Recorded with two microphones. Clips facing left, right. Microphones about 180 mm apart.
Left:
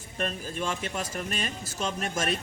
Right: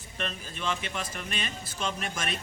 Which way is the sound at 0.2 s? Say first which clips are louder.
Left 5 dB; 45° left (ahead or behind).